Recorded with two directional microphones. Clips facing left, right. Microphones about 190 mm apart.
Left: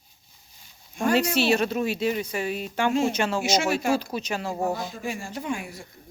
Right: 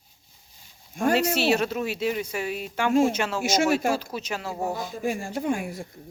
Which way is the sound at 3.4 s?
50° right (ahead or behind).